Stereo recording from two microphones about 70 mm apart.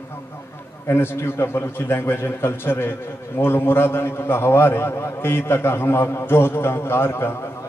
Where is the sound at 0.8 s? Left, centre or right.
Left.